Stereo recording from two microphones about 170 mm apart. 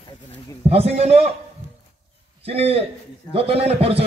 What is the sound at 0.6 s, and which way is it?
Speech, 35° right (ahead or behind).